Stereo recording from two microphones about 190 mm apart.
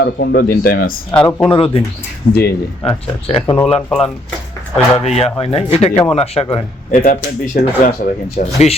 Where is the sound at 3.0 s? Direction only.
25° left (ahead or behind).